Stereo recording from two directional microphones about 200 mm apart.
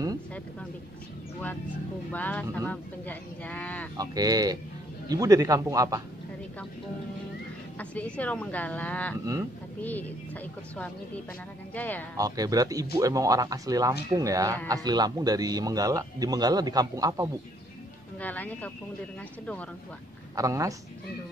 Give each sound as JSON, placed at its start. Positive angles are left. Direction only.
{"t": 2.1, "sound": "speech", "side_deg": 10}
{"t": 3.9, "sound": "a man's voice", "side_deg": -20}
{"t": 7.8, "sound": "speech", "side_deg": 5}
{"t": 9.2, "sound": "a man's voice", "side_deg": -15}
{"t": 9.8, "sound": "speech", "side_deg": 10}
{"t": 12.2, "sound": "a man's voice", "side_deg": -20}
{"t": 18.2, "sound": "speech", "side_deg": 10}
{"t": 20.3, "sound": "a man's voice", "side_deg": -15}